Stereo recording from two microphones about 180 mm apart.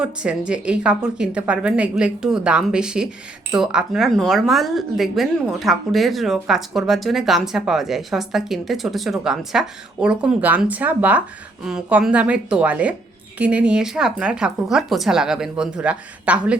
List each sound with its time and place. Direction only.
0.0 s speech: 5° right (ahead or behind)